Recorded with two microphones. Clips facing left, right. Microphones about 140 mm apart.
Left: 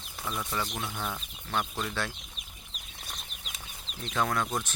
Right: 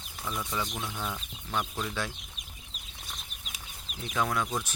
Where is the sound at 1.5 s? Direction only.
5° right (ahead or behind).